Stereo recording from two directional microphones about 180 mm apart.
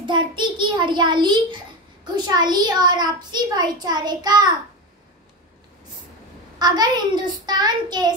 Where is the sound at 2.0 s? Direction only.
25° right (ahead or behind).